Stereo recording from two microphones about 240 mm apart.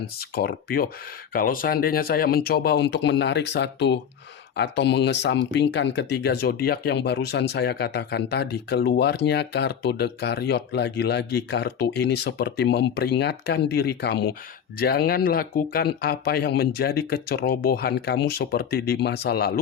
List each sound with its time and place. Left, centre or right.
0.0 s speech: left